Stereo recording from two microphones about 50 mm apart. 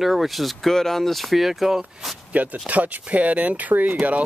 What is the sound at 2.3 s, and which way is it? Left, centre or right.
Speech, right.